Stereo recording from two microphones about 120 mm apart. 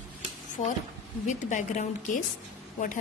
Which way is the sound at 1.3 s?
90° left.